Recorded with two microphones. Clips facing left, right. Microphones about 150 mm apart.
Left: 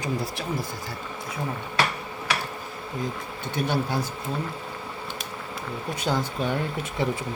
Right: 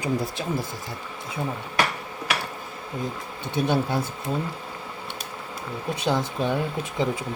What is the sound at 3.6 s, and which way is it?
Speech, 25° right (ahead or behind).